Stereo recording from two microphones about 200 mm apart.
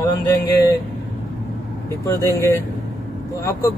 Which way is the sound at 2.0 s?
15° left (ahead or behind).